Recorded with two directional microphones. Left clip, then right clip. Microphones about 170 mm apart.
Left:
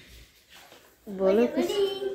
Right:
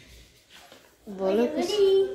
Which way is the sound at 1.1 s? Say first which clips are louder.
Left 2 dB; 15° left (ahead or behind).